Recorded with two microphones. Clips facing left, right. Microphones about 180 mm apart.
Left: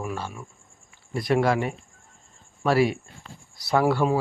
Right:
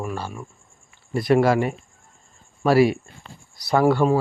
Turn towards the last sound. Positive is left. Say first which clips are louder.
# right 4 dB
turn(degrees=5)  # may be behind; listen again after turning